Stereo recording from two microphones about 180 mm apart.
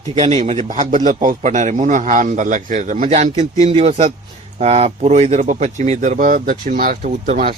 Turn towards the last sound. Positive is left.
turn(degrees=-45)  # may be behind; listen again after turning